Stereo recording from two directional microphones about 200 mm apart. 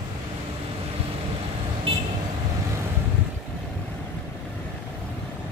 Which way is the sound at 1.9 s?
30° right (ahead or behind).